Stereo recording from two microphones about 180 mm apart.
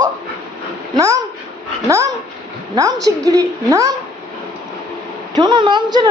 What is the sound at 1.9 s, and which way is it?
A woman's voice, 15° right (ahead or behind).